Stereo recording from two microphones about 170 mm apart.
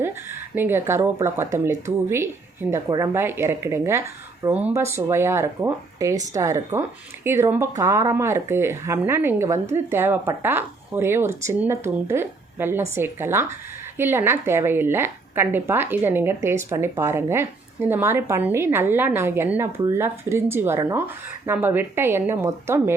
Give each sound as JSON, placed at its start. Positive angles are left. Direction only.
{"t": 0.0, "sound": "speech", "side_deg": -15}